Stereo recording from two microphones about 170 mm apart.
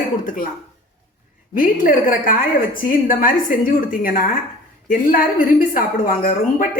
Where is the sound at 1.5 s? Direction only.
55° left (ahead or behind).